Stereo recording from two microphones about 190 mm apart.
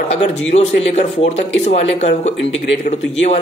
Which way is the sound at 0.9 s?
35° left (ahead or behind).